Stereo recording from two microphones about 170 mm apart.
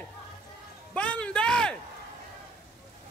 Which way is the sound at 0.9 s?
10° left (ahead or behind).